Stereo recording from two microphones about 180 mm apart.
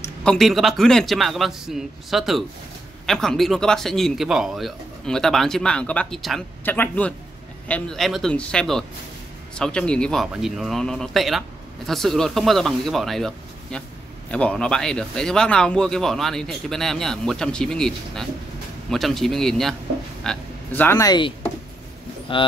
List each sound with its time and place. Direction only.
0.2 s speech: centre (ahead or behind)
21.1 s speech: 25° left (ahead or behind)